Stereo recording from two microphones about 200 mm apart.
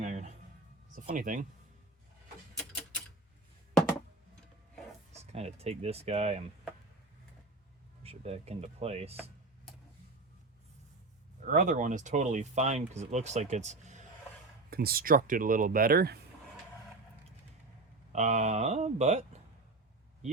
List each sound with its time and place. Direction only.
0.0 s music: 35° right (ahead or behind)
0.9 s speech: 40° right (ahead or behind)
2.6 s a sound: 5° left (ahead or behind)
5.3 s speech: 30° right (ahead or behind)
8.0 s speech: 30° right (ahead or behind)
11.4 s speech: 40° right (ahead or behind)
14.7 s speech: 50° right (ahead or behind)
18.1 s speech: 35° right (ahead or behind)